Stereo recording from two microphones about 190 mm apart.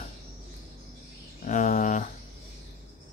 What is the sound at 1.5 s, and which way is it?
Speech, 40° left (ahead or behind).